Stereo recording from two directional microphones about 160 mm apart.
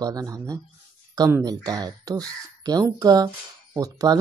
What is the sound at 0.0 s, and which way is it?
Speech, 25° right (ahead or behind).